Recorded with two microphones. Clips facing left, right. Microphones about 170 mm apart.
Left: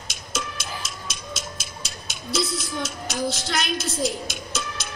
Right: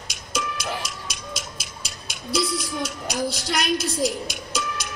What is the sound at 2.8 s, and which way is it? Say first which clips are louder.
A woman's voice: even; 15° right (ahead or behind).